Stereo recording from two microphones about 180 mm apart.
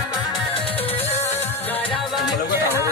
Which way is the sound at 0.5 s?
30° left (ahead or behind).